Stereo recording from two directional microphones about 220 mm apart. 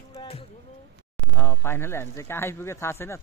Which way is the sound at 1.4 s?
10° left (ahead or behind).